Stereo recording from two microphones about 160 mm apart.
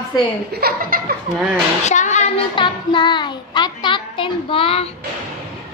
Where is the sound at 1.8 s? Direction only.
50° left (ahead or behind).